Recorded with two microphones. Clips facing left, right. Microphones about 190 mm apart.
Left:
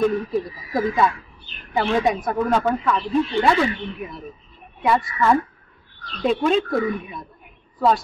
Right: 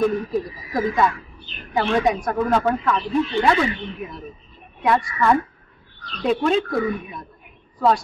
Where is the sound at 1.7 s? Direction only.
Centre (ahead or behind).